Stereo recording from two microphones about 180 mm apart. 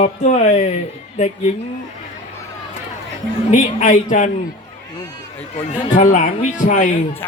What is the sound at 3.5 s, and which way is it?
Speech, 45° left (ahead or behind).